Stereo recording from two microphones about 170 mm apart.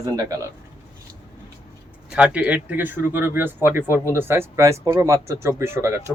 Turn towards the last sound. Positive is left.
turn(degrees=-15)  # may be behind; listen again after turning